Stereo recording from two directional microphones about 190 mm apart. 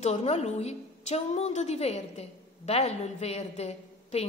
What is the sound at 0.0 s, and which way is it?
A woman's voice, 35° left (ahead or behind).